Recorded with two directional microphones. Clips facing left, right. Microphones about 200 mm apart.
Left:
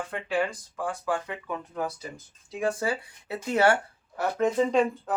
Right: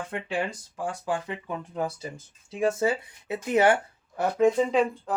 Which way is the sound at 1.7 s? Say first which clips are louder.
Right 3 dB; 30° right (ahead or behind).